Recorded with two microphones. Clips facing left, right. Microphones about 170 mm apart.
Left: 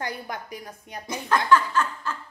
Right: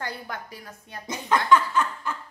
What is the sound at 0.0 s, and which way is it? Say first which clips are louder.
A woman's voice: left 2 dB; 15° left (ahead or behind).